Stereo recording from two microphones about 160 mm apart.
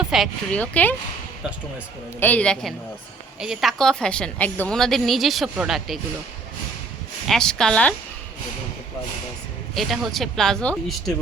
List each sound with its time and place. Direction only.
0.0 s speech: centre (ahead or behind)
2.2 s a woman's voice: 10° left (ahead or behind)
7.3 s a woman's voice: 5° left (ahead or behind)
9.7 s a woman's voice: centre (ahead or behind)